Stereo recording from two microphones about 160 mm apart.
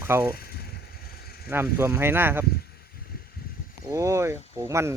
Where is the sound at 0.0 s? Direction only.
15° right (ahead or behind).